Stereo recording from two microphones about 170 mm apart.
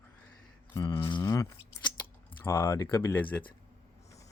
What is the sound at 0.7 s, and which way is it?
Speech, 20° left (ahead or behind).